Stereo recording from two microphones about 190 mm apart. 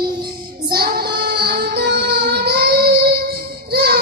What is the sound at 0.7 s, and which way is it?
Child singing, 50° right (ahead or behind).